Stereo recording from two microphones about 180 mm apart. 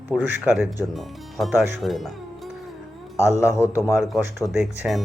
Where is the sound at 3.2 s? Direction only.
15° left (ahead or behind).